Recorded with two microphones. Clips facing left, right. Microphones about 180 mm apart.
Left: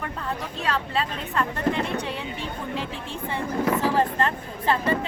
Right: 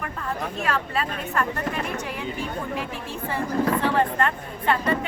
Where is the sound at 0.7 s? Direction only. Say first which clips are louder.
Left 1 dB; 25° left (ahead or behind).